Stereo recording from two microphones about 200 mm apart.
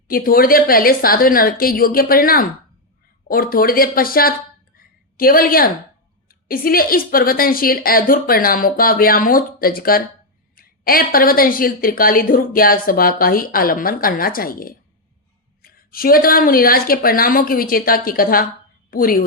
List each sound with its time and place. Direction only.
0.1 s speech: 45° left (ahead or behind)
4.8 s a sound: 45° left (ahead or behind)
6.2 s a woman's voice: 45° left (ahead or behind)